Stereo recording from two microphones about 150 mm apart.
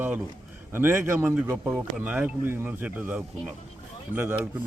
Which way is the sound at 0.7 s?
15° right (ahead or behind).